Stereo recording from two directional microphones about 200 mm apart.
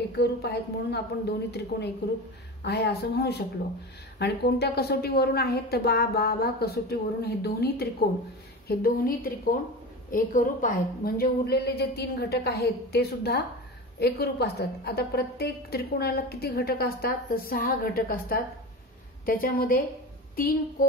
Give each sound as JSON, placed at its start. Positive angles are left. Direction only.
{"t": 0.2, "sound": "a woman's voice", "side_deg": 55}